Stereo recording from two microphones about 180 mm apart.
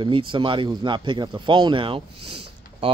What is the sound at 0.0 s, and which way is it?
Speech, 30° right (ahead or behind).